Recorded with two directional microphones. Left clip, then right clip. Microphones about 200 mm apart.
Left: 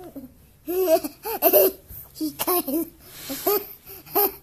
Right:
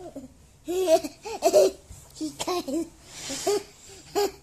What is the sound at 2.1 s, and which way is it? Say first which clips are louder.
Speech: left 4 dB; 15° left (ahead or behind).